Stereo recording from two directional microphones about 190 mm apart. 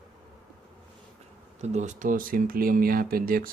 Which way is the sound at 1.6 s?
35° right (ahead or behind).